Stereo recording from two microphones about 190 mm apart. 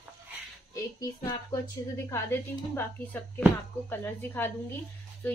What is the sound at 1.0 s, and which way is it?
Child singing, 20° left (ahead or behind).